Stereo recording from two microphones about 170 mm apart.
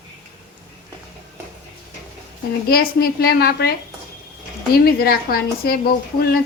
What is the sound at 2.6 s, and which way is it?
A woman's voice, 65° left (ahead or behind).